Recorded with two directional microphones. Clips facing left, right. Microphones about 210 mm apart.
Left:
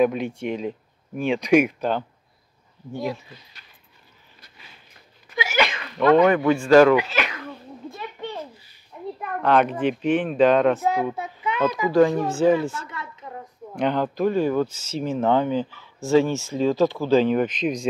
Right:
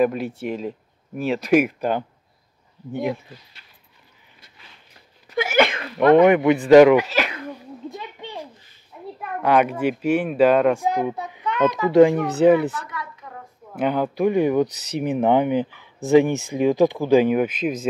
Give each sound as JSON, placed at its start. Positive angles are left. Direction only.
{"t": 0.0, "sound": "speech", "side_deg": -5}
{"t": 5.3, "sound": "sneeze", "side_deg": -55}
{"t": 5.9, "sound": "speech", "side_deg": -20}
{"t": 7.0, "sound": "speech", "side_deg": -35}
{"t": 7.4, "sound": "a sound", "side_deg": -15}
{"t": 9.2, "sound": "speech", "side_deg": -10}
{"t": 11.1, "sound": "a sound", "side_deg": 5}
{"t": 11.9, "sound": "speech", "side_deg": -20}
{"t": 12.8, "sound": "a sound", "side_deg": 25}
{"t": 13.7, "sound": "speech", "side_deg": -10}